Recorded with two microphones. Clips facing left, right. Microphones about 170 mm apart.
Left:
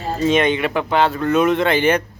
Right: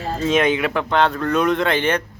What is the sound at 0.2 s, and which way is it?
Speech, centre (ahead or behind).